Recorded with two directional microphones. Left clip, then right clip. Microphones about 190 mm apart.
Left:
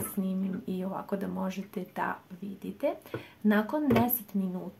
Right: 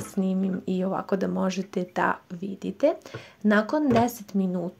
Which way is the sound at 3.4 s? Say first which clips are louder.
Right 5 dB; 35° right (ahead or behind).